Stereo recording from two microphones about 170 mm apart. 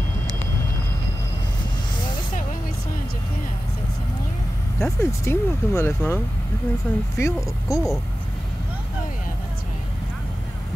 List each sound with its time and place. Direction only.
4.7 s speech: 15° left (ahead or behind)